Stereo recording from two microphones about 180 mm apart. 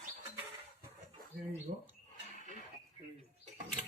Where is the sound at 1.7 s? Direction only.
45° right (ahead or behind).